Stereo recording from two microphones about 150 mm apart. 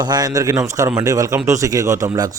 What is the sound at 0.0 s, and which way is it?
A man's voice, 25° right (ahead or behind).